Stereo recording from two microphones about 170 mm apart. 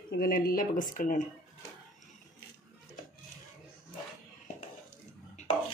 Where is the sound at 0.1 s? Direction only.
60° left (ahead or behind).